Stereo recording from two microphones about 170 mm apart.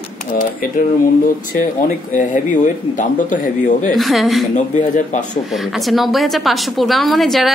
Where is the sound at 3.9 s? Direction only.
Centre (ahead or behind).